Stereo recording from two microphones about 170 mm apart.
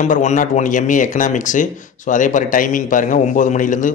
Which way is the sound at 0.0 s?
45° left (ahead or behind).